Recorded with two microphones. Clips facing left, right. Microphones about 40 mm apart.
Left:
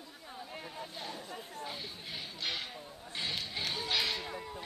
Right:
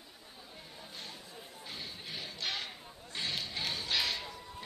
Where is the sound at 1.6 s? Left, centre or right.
Centre.